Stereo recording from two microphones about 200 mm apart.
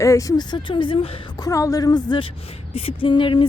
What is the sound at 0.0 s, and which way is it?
Speech, 15° left (ahead or behind).